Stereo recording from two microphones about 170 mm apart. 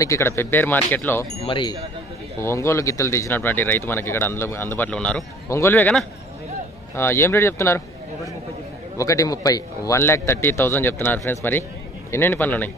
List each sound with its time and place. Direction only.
0.0 s speech: 15° left (ahead or behind)
1.4 s speech: 30° left (ahead or behind)
2.4 s speech: 15° left (ahead or behind)
8.9 s speech: 20° left (ahead or behind)